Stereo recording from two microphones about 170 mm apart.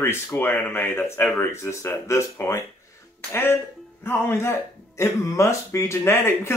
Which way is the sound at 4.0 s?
15° left (ahead or behind).